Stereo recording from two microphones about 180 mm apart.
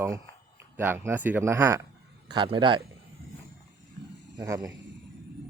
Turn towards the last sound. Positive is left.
turn(degrees=-20)  # may be behind; listen again after turning